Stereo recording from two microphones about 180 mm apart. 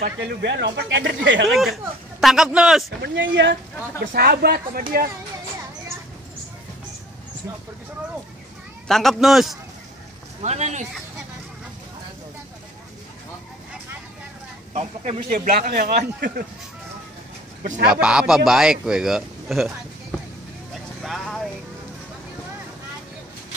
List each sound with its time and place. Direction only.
0.0 s speech: 70° right (ahead or behind); by 1.5 s 90° right
1.5 s speech: centre (ahead or behind)
3.0 s speech: 80° right
4.0 s speech: 55° right (ahead or behind)
8.8 s speech: centre (ahead or behind)
10.4 s speech: 40° right (ahead or behind)
14.7 s speech: 35° right (ahead or behind)
15.3 s speech: 50° right (ahead or behind)
18.0 s speech: 5° right (ahead or behind)
21.0 s vehicle: centre (ahead or behind)